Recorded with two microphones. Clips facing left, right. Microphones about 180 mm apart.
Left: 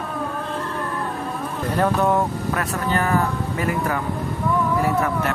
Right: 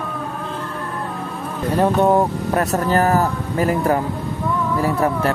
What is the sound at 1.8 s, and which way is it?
Speech, 30° right (ahead or behind).